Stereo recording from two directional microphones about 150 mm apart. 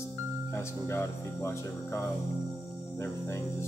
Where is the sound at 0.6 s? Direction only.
15° left (ahead or behind).